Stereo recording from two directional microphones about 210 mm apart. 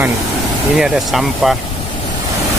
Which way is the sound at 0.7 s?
Centre (ahead or behind).